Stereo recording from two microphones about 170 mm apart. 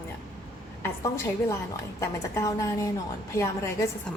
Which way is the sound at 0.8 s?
15° left (ahead or behind).